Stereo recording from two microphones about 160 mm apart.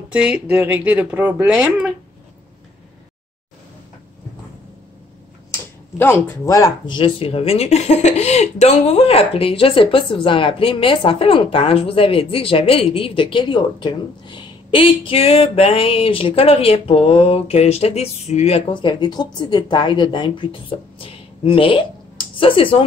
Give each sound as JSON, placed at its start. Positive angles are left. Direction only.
{"t": 0.1, "sound": "speech", "side_deg": -5}
{"t": 5.9, "sound": "speech", "side_deg": 15}
{"t": 7.0, "sound": "speech", "side_deg": 35}
{"t": 18.7, "sound": "a woman's voice", "side_deg": 30}
{"t": 21.0, "sound": "a sound", "side_deg": 35}